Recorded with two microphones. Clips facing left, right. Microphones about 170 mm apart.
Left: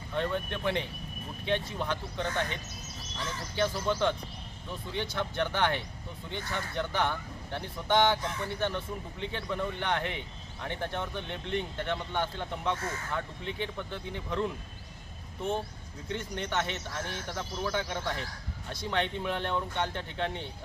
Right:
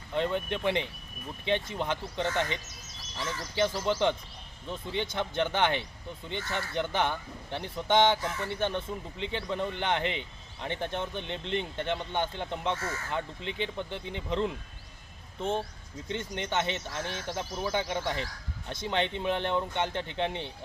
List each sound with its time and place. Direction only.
0.1 s speech: 15° right (ahead or behind)
3.6 s speech: 20° right (ahead or behind)
16.0 s speech: 20° right (ahead or behind)